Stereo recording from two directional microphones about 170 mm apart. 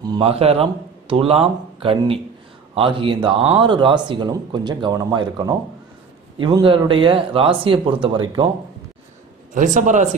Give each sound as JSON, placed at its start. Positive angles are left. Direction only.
{"t": 0.2, "sound": "a man's voice", "side_deg": -35}
{"t": 9.5, "sound": "a man's voice", "side_deg": -50}